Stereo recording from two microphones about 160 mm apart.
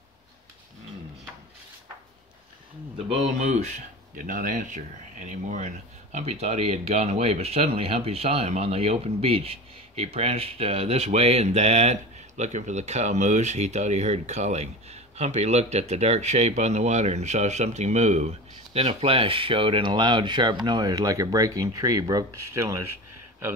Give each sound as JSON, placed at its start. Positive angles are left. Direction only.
{"t": 3.3, "sound": "speech", "side_deg": -50}